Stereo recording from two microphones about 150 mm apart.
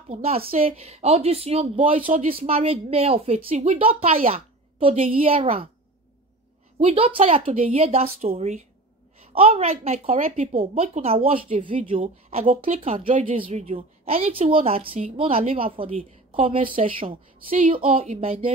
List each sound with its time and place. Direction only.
0.1 s a woman's voice: 40° right (ahead or behind)
6.8 s a woman's voice: 40° right (ahead or behind)